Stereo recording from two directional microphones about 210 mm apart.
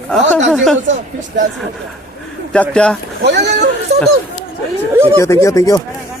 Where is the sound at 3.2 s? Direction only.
55° right (ahead or behind).